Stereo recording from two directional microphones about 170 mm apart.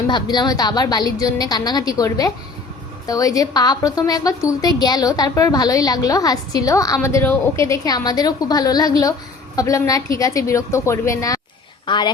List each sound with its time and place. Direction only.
0.1 s a woman's voice: 25° left (ahead or behind)